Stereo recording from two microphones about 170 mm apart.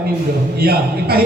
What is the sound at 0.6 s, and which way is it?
Speech, 65° right (ahead or behind).